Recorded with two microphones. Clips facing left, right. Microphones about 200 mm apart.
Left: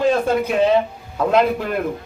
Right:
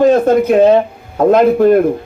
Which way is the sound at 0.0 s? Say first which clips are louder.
Right 8 dB; 45° right (ahead or behind).